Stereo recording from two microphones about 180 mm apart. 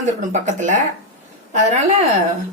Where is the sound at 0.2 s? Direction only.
45° right (ahead or behind).